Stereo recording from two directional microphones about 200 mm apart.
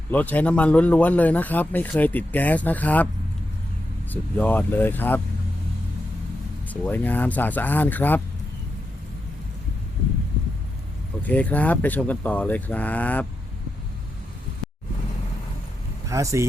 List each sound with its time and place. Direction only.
0.1 s speech: 10° left (ahead or behind)
4.1 s speech: 10° left (ahead or behind)
6.7 s speech: 10° left (ahead or behind)
11.2 s speech: 10° left (ahead or behind)
16.0 s speech: 15° right (ahead or behind)